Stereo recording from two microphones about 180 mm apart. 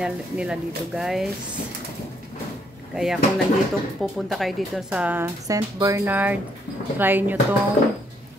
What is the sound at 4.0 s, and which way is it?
Speech, centre (ahead or behind).